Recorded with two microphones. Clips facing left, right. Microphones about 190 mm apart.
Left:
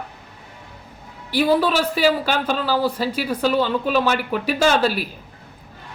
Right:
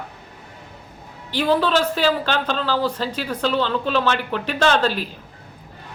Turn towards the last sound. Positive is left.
turn(degrees=10)  # may be behind; listen again after turning